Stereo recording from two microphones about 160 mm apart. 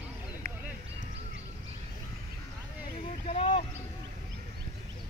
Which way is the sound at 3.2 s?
40° left (ahead or behind).